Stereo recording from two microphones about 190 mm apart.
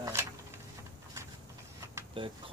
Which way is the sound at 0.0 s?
15° right (ahead or behind).